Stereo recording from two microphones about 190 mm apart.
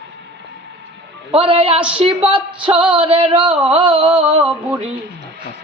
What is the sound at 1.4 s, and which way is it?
Female singing, 30° right (ahead or behind).